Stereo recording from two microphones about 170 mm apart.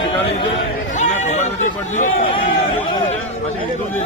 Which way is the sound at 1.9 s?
45° left (ahead or behind).